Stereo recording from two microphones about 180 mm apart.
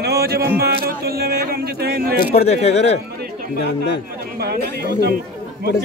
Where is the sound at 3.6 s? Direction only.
70° left (ahead or behind).